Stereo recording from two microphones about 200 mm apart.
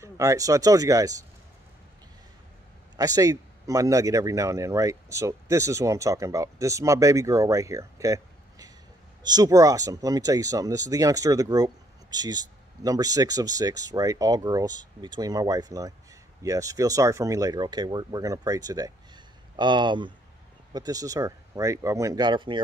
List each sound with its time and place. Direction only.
0.0 s speech: 15° right (ahead or behind)
3.0 s speech: 15° right (ahead or behind)